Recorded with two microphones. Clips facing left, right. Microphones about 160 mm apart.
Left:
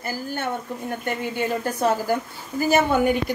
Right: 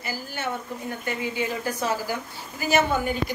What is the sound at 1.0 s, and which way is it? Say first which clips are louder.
A woman's voice: left 2 dB; 55° left (ahead or behind).